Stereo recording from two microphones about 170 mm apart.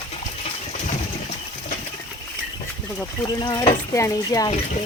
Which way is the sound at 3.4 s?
25° left (ahead or behind).